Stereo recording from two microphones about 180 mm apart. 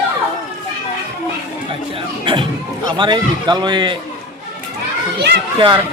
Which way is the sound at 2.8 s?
25° right (ahead or behind).